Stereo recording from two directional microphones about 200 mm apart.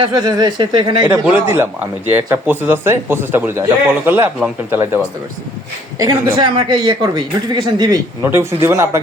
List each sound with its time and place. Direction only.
0.0 s speech: 20° right (ahead or behind)
1.2 s a man's voice: 10° right (ahead or behind)
6.0 s a man's voice: 20° right (ahead or behind)